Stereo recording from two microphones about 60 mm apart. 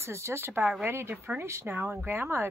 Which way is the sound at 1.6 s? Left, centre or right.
Right.